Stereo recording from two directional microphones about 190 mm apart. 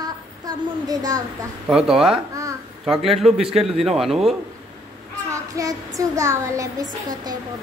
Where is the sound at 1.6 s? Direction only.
Centre (ahead or behind).